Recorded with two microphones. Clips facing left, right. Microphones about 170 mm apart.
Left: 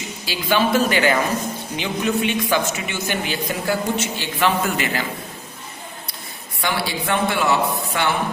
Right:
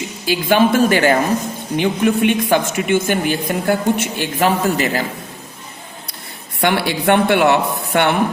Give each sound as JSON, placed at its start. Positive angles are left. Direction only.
{"t": 0.3, "sound": "a woman's voice", "side_deg": -50}
{"t": 4.4, "sound": "a man's voice", "side_deg": -40}
{"t": 6.6, "sound": "a woman's voice", "side_deg": -65}